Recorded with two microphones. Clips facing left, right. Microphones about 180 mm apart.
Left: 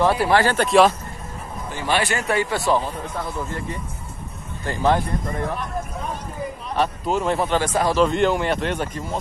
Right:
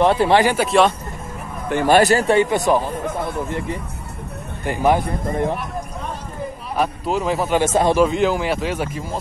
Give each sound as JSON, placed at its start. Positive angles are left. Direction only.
{"t": 0.0, "sound": "speech", "side_deg": -20}
{"t": 0.7, "sound": "speech", "side_deg": 0}
{"t": 1.7, "sound": "speech", "side_deg": -50}
{"t": 4.6, "sound": "speech", "side_deg": -15}
{"t": 5.3, "sound": "speech", "side_deg": -30}
{"t": 6.7, "sound": "speech", "side_deg": -5}
{"t": 7.5, "sound": "speech", "side_deg": -25}
{"t": 7.9, "sound": "speech", "side_deg": -5}